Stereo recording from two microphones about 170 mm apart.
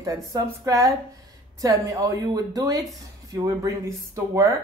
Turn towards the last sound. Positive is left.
turn(degrees=-20)  # may be behind; listen again after turning